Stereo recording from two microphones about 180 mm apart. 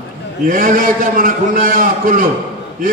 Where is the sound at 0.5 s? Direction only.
50° right (ahead or behind).